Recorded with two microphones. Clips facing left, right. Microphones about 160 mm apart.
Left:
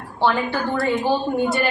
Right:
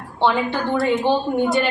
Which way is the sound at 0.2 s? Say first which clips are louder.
Right 1 dB; 20° right (ahead or behind).